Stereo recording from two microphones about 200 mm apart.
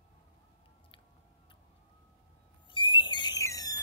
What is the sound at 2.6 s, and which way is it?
Owl, 25° left (ahead or behind).